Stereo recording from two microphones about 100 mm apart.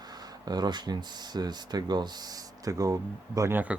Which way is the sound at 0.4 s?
45° right (ahead or behind).